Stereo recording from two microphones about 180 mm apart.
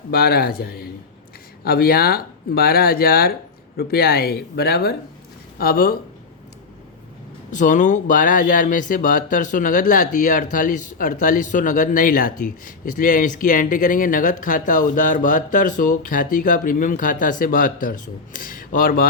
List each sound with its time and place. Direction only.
0.1 s speech: 55° left (ahead or behind)
7.5 s speech: 45° left (ahead or behind)